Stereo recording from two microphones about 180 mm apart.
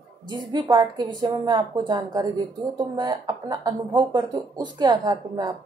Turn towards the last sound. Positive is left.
turn(degrees=-20)  # may be behind; listen again after turning